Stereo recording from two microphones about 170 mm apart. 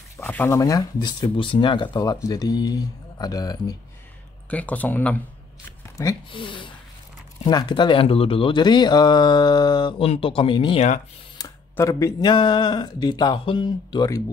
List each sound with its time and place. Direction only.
0.2 s speech: 10° left (ahead or behind)
4.5 s speech: 10° left (ahead or behind)
6.3 s speech: 30° left (ahead or behind)
11.3 s speech: 20° left (ahead or behind)